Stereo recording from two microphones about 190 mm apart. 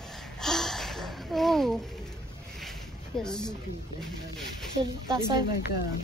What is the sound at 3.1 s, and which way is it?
Speech, 5° left (ahead or behind).